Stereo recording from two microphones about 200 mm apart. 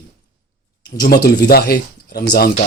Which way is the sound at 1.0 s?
50° left (ahead or behind).